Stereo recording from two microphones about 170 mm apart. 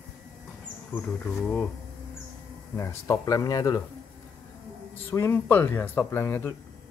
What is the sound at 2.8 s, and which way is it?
Speech, 15° left (ahead or behind).